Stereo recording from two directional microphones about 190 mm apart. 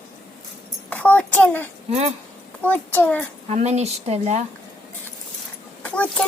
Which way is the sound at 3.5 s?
35° right (ahead or behind).